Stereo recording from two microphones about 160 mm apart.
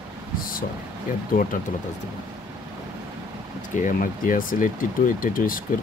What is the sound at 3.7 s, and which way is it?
Speech, 55° left (ahead or behind).